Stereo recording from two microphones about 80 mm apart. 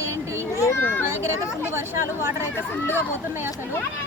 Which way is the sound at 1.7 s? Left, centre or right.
Right.